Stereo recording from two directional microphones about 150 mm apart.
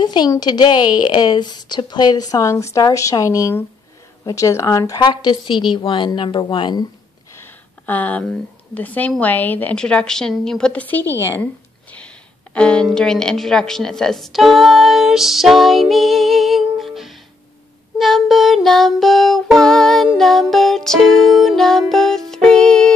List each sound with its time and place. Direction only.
0.0 s a woman's voice: 30° left (ahead or behind)
7.3 s a sound: 10° left (ahead or behind)
8.7 s a woman's voice: 10° left (ahead or behind)
12.5 s a woman's voice: 5° left (ahead or behind)
17.9 s child singing: centre (ahead or behind)
20.2 s music: centre (ahead or behind)